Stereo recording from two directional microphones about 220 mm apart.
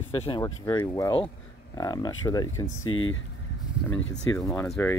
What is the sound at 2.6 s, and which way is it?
Speech, 65° left (ahead or behind).